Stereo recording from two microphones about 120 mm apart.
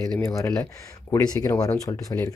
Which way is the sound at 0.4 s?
25° left (ahead or behind).